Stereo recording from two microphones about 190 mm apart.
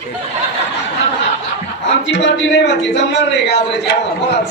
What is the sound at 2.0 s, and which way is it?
A man's voice, 70° left (ahead or behind).